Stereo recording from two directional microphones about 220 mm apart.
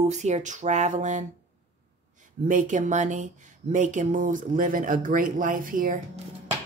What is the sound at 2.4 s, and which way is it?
A woman's voice, 35° right (ahead or behind).